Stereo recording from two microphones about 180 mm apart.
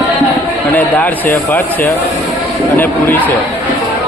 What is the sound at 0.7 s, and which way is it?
Speech, 10° left (ahead or behind).